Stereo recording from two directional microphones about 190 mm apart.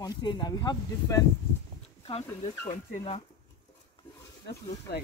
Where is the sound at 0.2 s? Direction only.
25° left (ahead or behind).